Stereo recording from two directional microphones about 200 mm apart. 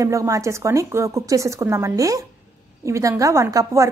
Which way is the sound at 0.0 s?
15° right (ahead or behind).